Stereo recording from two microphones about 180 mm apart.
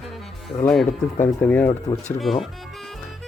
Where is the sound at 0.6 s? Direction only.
Centre (ahead or behind).